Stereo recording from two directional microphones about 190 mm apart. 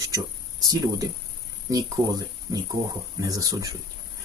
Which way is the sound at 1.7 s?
20° right (ahead or behind).